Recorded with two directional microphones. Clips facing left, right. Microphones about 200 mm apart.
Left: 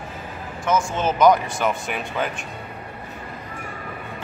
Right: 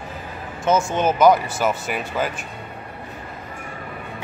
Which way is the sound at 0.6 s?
25° right (ahead or behind).